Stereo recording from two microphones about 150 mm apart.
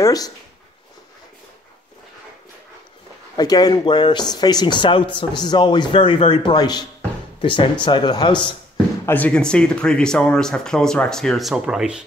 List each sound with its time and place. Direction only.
0.0 s speech: 25° left (ahead or behind)
3.3 s speech: 25° left (ahead or behind)
9.0 s speech: 10° left (ahead or behind); by 12.0 s 5° right (ahead or behind)